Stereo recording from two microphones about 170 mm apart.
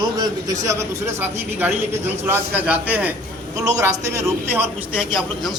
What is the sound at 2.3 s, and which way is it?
A man's voice, 10° right (ahead or behind).